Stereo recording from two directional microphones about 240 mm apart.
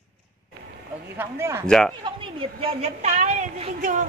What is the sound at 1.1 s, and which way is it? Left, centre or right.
Speech, centre.